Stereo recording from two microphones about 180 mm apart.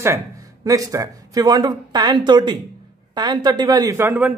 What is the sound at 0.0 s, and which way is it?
Speech, 15° right (ahead or behind).